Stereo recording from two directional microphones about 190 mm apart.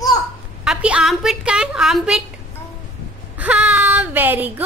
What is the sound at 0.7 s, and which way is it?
A woman's voice, 5° right (ahead or behind).